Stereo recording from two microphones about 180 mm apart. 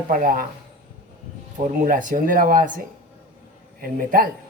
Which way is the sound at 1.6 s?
50° right (ahead or behind).